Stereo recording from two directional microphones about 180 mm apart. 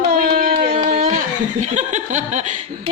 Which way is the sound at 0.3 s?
45° right (ahead or behind).